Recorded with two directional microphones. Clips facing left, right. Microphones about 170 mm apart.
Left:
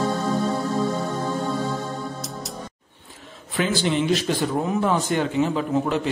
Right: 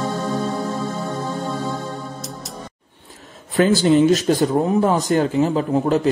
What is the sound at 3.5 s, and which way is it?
A man's voice, 40° right (ahead or behind).